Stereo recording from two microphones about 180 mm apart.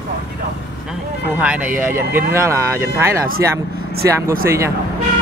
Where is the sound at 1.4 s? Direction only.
10° right (ahead or behind).